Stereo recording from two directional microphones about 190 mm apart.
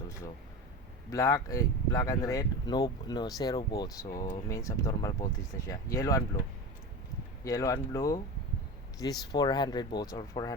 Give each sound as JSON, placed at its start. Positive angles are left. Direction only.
{"t": 1.1, "sound": "speech", "side_deg": 15}
{"t": 7.4, "sound": "speech", "side_deg": 15}